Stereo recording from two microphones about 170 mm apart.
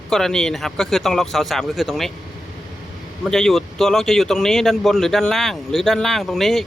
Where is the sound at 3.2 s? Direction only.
Centre (ahead or behind).